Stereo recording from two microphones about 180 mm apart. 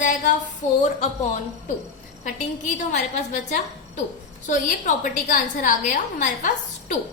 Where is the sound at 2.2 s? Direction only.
45° left (ahead or behind).